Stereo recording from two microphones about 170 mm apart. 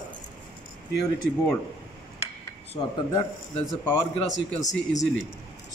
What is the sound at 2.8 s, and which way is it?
Speech, 30° left (ahead or behind).